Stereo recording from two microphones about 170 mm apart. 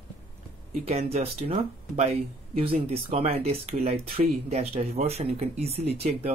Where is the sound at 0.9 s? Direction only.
35° right (ahead or behind).